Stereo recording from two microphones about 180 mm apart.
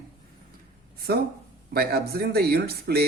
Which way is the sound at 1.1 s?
60° right (ahead or behind).